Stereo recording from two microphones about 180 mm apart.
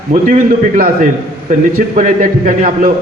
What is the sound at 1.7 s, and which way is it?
A man's voice, 50° right (ahead or behind).